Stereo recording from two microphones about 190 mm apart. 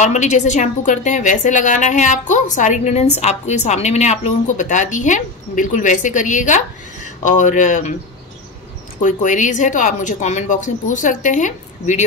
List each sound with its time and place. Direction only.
0.0 s a woman's voice: 40° left (ahead or behind)
9.0 s a woman's voice: 40° left (ahead or behind)